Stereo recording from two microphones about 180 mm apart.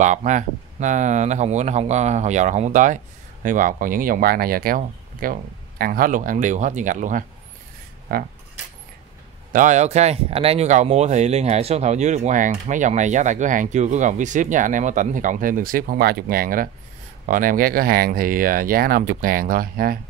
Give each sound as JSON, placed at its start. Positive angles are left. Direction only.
{"t": 0.0, "sound": "speech", "side_deg": -40}
{"t": 9.5, "sound": "speech", "side_deg": -45}